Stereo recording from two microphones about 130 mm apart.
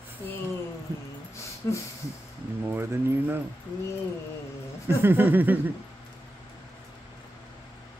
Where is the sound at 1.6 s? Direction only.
25° left (ahead or behind).